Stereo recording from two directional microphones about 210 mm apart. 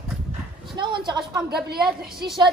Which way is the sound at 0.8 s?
20° right (ahead or behind).